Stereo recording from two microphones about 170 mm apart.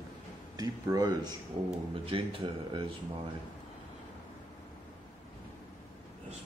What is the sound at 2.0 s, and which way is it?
Speech, 30° right (ahead or behind).